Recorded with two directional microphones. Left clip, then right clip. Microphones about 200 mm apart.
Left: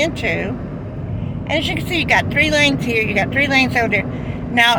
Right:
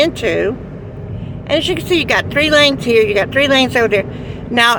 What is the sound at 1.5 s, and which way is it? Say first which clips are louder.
Speech: right 5 dB; 30° right (ahead or behind).